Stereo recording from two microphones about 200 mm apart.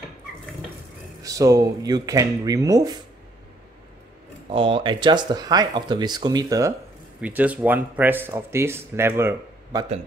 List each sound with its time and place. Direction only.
1.2 s speech: 15° right (ahead or behind)
4.5 s speech: 25° right (ahead or behind)
7.2 s speech: 5° right (ahead or behind)